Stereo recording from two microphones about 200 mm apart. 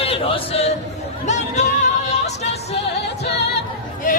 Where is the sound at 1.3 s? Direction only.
35° left (ahead or behind).